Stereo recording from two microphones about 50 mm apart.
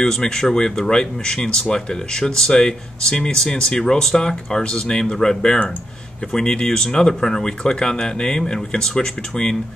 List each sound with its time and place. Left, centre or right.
0.0 s speech: centre